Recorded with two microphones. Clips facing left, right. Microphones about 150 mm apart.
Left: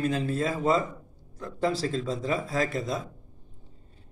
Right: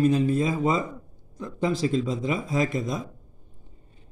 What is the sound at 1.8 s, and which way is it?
A man's voice, 15° right (ahead or behind).